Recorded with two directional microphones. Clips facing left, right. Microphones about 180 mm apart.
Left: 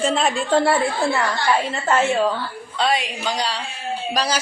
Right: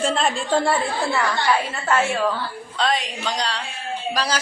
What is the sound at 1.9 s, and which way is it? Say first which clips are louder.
Speech: left 2 dB; 20° left (ahead or behind).